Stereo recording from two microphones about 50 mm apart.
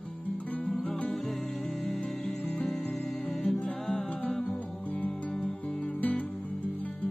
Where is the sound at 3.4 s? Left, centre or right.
Left.